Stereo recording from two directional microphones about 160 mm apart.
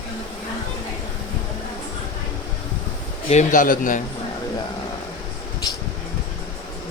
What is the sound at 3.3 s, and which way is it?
Speech, 50° left (ahead or behind).